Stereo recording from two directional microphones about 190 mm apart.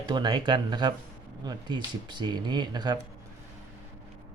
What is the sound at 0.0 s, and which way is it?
Speech, 25° right (ahead or behind).